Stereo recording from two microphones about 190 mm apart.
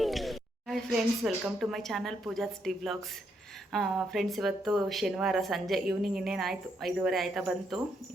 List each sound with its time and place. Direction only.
0.0 s a woman's voice: centre (ahead or behind)